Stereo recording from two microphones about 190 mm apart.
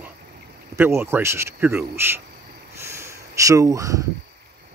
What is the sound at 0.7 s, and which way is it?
Speech, 15° right (ahead or behind).